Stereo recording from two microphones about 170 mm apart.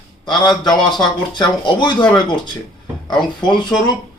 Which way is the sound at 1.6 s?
25° left (ahead or behind).